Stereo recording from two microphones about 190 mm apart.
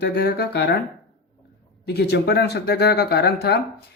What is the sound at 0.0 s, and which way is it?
Speech, 60° left (ahead or behind).